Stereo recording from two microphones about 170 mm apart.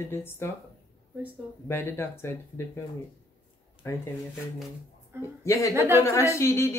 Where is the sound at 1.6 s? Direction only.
15° left (ahead or behind).